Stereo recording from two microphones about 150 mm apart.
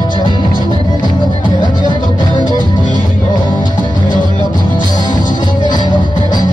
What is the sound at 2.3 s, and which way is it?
Music, 30° left (ahead or behind).